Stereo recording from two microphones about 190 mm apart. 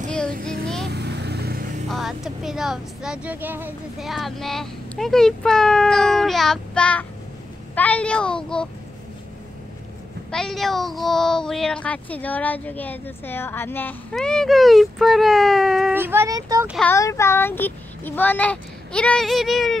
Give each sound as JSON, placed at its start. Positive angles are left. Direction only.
{"t": 0.8, "sound": "vehicle", "side_deg": -60}
{"t": 1.9, "sound": "speech", "side_deg": 0}
{"t": 10.3, "sound": "speech", "side_deg": 0}
{"t": 16.0, "sound": "speech", "side_deg": -10}
{"t": 16.8, "sound": "a child's voice", "side_deg": 15}